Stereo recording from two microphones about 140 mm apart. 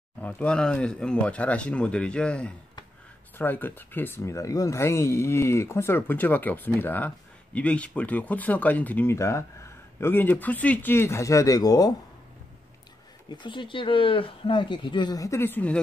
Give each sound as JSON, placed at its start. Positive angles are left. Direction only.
{"t": 0.2, "sound": "speech", "side_deg": 10}
{"t": 13.3, "sound": "speech", "side_deg": 35}